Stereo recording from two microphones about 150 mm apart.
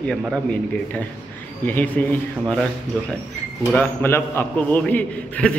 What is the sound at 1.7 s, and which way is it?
A man's voice, 10° left (ahead or behind).